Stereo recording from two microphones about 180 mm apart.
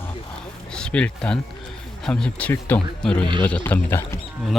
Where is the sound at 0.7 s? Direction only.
5° left (ahead or behind).